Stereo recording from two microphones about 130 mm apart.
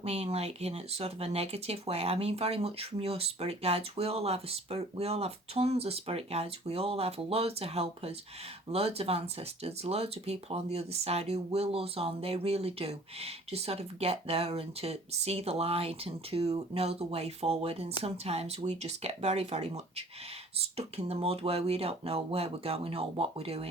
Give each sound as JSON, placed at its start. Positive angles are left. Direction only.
{"t": 0.0, "sound": "speech", "side_deg": -50}